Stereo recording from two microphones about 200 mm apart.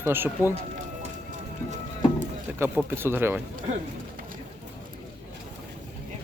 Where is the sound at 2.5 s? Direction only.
10° right (ahead or behind).